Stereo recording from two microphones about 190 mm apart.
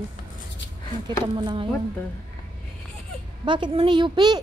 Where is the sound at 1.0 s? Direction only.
25° right (ahead or behind).